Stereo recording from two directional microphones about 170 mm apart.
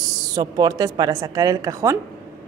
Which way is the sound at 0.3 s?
25° right (ahead or behind).